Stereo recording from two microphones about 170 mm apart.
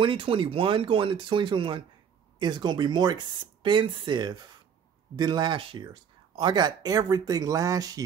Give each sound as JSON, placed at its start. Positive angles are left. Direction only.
{"t": 0.0, "sound": "speech", "side_deg": -30}